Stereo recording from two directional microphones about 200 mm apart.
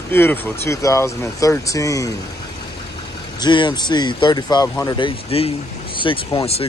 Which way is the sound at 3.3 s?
20° left (ahead or behind).